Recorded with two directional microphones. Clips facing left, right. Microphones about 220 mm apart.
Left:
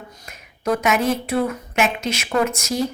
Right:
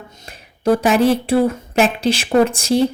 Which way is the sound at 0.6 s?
30° right (ahead or behind).